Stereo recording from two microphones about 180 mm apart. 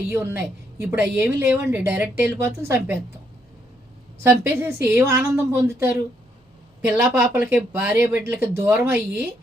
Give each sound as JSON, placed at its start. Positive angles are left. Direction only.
{"t": 0.1, "sound": "a woman's voice", "side_deg": -15}
{"t": 4.2, "sound": "a woman's voice", "side_deg": -15}